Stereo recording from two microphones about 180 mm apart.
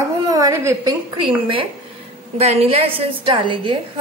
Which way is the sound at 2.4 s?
35° right (ahead or behind).